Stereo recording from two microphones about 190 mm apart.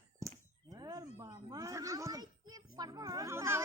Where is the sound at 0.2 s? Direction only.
15° right (ahead or behind).